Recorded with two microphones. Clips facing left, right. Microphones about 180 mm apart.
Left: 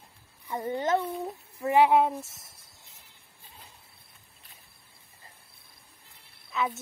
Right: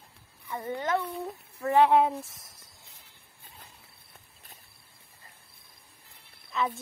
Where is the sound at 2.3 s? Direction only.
25° left (ahead or behind).